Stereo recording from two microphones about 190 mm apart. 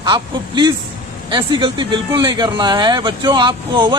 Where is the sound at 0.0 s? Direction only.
25° right (ahead or behind).